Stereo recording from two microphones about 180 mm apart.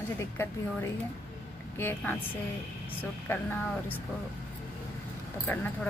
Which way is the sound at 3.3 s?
10° left (ahead or behind).